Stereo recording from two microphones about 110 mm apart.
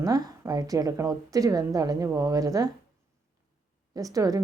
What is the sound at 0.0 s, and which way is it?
A woman's voice, 35° right (ahead or behind).